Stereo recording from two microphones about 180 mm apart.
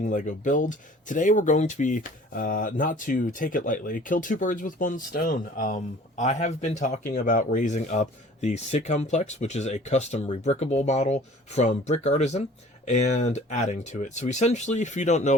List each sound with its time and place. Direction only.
0.0 s speech: 45° left (ahead or behind)